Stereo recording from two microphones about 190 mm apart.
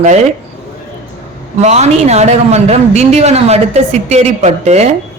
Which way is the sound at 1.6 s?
35° right (ahead or behind).